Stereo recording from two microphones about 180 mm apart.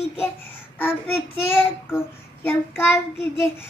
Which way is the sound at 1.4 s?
15° left (ahead or behind).